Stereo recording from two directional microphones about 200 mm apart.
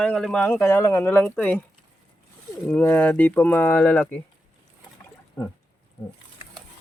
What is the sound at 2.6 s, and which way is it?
Speech, 10° left (ahead or behind).